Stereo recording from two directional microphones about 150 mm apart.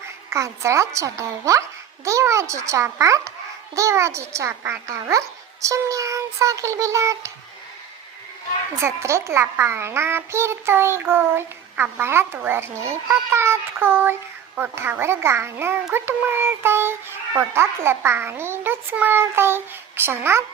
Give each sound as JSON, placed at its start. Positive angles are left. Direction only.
{"t": 0.3, "sound": "a child's voice", "side_deg": -20}
{"t": 8.8, "sound": "a child's voice", "side_deg": -20}